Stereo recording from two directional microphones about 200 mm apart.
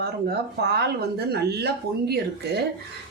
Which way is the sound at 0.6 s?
55° right (ahead or behind).